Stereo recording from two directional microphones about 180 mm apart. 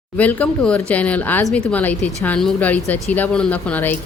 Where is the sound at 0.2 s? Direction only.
10° left (ahead or behind).